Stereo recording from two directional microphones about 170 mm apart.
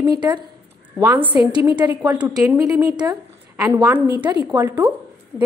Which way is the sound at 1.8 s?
10° right (ahead or behind).